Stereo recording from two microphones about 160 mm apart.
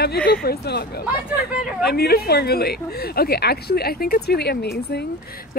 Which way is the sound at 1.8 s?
85° left.